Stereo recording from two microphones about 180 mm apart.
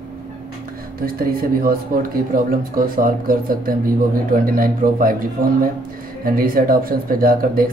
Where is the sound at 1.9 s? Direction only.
55° right (ahead or behind).